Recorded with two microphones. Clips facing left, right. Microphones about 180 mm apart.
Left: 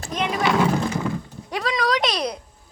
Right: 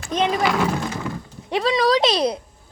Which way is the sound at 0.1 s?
25° right (ahead or behind).